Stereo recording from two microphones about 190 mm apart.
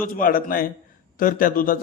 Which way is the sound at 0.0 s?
45° left (ahead or behind).